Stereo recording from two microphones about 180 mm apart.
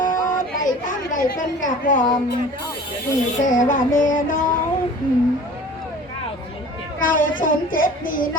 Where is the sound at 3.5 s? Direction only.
45° left (ahead or behind).